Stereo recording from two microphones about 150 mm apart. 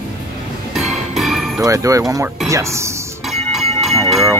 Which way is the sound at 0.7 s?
Centre (ahead or behind).